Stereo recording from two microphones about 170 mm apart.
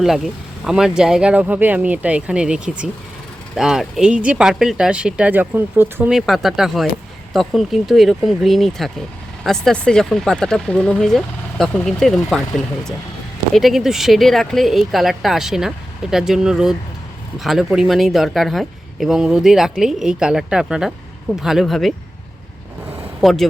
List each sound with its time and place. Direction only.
0.0 s speech: centre (ahead or behind)
6.1 s speech: centre (ahead or behind)
13.5 s speech: centre (ahead or behind)
23.2 s speech: centre (ahead or behind)